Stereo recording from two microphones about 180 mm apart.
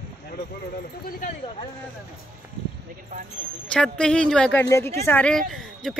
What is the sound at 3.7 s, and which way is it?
Speech, 5° left (ahead or behind).